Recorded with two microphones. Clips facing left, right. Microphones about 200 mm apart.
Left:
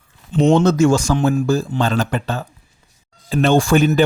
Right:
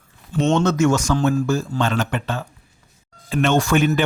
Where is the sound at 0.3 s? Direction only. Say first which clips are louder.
Left 5 dB; 15° left (ahead or behind).